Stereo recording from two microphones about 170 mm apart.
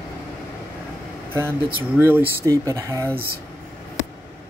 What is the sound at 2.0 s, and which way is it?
Speech, 10° right (ahead or behind).